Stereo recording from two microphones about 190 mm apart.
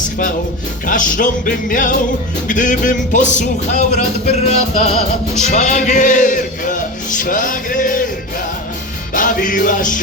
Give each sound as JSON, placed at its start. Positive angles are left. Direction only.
{"t": 0.9, "sound": "music", "side_deg": 45}
{"t": 9.1, "sound": "music", "side_deg": 45}